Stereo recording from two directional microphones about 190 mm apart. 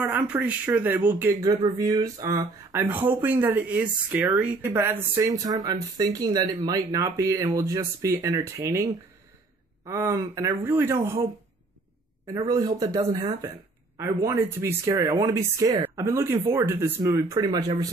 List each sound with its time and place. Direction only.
0.0 s speech: 10° right (ahead or behind)
1.4 s speech: 20° right (ahead or behind)
9.8 s speech: 15° right (ahead or behind)
12.4 s speech: 20° right (ahead or behind)